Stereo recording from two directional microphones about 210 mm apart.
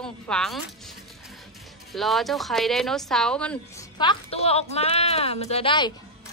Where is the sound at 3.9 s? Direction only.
25° left (ahead or behind).